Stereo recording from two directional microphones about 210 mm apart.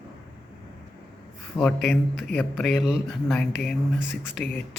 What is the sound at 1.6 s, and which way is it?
Speech, centre (ahead or behind).